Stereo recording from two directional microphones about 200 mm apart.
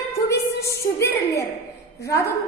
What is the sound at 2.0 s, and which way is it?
Speech, 15° left (ahead or behind).